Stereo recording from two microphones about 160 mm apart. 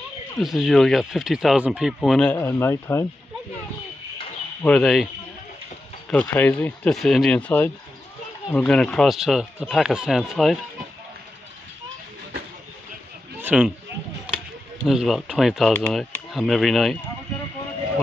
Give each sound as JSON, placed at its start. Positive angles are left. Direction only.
{"t": 0.4, "sound": "speech", "side_deg": 0}
{"t": 2.3, "sound": "speech", "side_deg": 15}
{"t": 4.6, "sound": "speech", "side_deg": 0}
{"t": 13.4, "sound": "a sound", "side_deg": -10}
{"t": 14.9, "sound": "speech", "side_deg": 0}